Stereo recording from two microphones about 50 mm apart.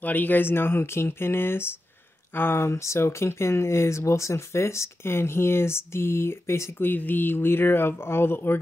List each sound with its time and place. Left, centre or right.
0.0 s speech: left
2.7 s speech: left
6.8 s speech: left